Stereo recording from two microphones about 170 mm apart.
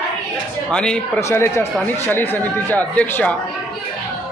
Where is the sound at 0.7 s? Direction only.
5° left (ahead or behind).